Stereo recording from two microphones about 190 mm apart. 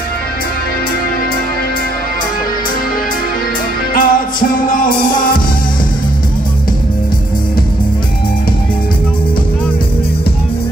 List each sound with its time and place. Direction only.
3.9 s music: 45° left (ahead or behind)